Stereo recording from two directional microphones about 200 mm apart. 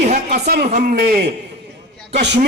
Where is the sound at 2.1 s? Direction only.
60° right (ahead or behind).